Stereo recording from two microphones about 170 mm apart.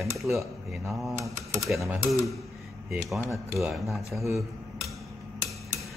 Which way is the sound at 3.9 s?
Centre (ahead or behind).